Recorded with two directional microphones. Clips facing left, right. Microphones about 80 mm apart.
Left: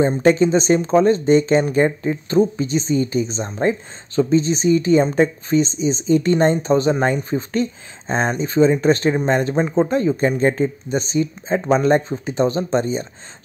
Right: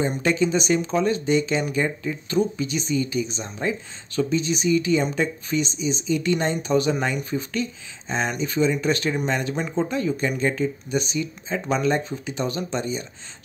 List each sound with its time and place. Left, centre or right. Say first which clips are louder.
0.0 s speech: left 7 dB; left